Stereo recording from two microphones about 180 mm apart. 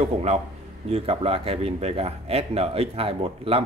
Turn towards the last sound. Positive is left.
turn(degrees=-30)  # may be behind; listen again after turning